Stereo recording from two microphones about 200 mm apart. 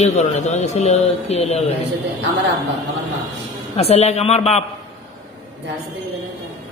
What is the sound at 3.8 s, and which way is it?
Speech, 30° left (ahead or behind).